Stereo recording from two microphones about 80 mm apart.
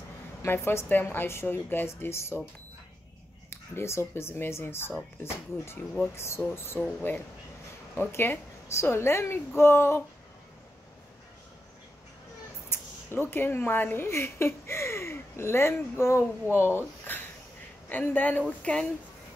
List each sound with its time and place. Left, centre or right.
0.5 s a woman's voice: left
3.4 s a woman's voice: left
6.1 s a woman's voice: left
12.6 s a woman's voice: left; by 18.9 s centre